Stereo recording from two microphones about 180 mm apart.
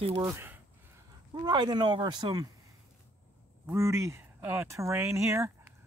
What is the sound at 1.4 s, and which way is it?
Speech, 25° right (ahead or behind).